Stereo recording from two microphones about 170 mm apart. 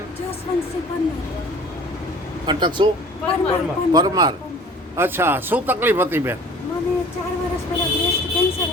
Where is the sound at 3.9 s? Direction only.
25° right (ahead or behind).